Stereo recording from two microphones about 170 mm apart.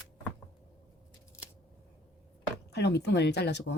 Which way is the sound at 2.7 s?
75° left (ahead or behind).